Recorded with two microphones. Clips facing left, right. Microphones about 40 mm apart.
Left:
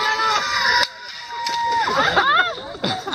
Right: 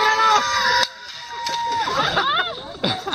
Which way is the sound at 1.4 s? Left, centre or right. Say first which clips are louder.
Left 2 dB; centre.